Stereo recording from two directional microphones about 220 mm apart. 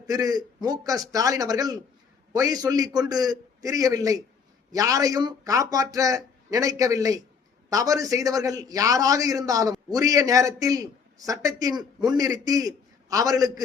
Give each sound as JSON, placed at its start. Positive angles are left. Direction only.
{"t": 0.0, "sound": "speech", "side_deg": -15}